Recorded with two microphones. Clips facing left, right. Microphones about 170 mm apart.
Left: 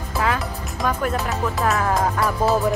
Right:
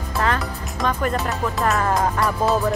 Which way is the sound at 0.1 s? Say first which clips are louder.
Even; centre (ahead or behind).